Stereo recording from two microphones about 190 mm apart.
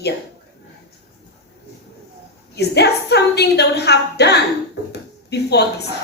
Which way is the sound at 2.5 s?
60° left (ahead or behind).